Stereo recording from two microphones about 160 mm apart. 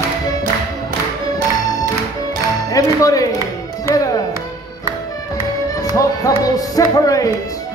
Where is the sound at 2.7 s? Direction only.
20° left (ahead or behind).